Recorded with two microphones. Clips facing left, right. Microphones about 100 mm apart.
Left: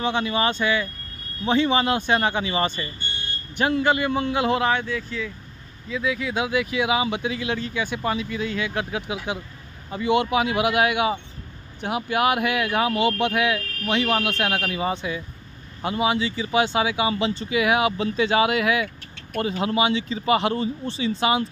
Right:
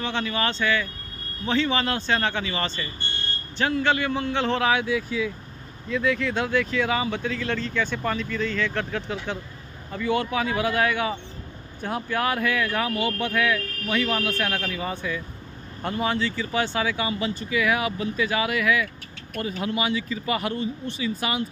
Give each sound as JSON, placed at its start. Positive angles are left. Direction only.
{"t": 0.0, "sound": "speech", "side_deg": 15}
{"t": 4.6, "sound": "speech", "side_deg": -10}
{"t": 5.9, "sound": "speech", "side_deg": 5}
{"t": 15.8, "sound": "speech", "side_deg": 10}